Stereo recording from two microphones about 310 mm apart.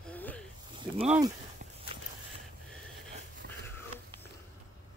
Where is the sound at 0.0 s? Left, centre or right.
Centre.